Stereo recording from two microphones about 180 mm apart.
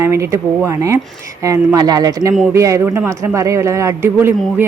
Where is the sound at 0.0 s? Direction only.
15° right (ahead or behind).